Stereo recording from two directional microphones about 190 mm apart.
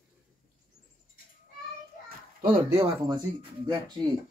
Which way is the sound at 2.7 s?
25° right (ahead or behind).